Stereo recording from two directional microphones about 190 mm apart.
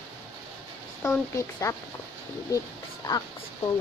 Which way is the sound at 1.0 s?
15° left (ahead or behind).